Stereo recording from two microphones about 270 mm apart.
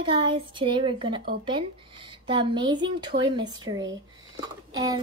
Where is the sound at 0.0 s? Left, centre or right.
Centre.